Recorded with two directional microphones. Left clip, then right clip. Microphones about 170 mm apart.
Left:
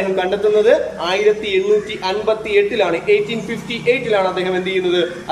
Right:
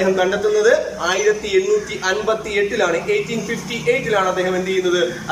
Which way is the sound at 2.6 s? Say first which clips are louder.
Left 3 dB; 20° left (ahead or behind).